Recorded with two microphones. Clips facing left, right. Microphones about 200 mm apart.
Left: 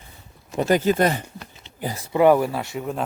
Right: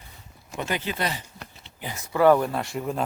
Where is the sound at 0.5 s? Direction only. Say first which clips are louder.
Left 10 dB; 40° left (ahead or behind).